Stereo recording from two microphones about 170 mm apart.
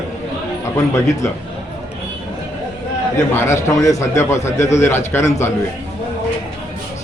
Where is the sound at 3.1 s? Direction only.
15° left (ahead or behind).